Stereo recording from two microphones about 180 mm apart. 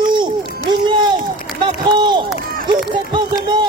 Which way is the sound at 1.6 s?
25° right (ahead or behind).